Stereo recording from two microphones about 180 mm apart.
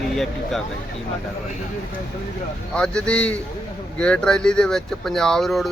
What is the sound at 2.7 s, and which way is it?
Speech, 5° left (ahead or behind).